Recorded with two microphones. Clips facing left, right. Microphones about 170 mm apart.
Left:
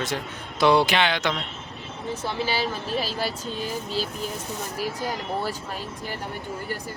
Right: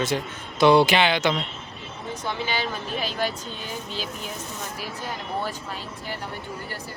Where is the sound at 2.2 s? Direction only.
35° left (ahead or behind).